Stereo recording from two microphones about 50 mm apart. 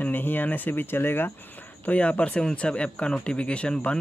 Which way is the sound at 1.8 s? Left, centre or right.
Left.